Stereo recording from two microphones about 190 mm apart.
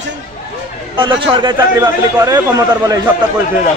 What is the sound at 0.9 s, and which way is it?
Speech, 25° right (ahead or behind).